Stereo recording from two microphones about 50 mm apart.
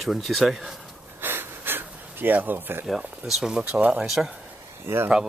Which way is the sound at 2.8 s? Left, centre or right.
Centre.